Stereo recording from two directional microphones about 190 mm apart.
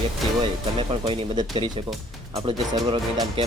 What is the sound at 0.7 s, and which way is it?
Speech, 25° right (ahead or behind).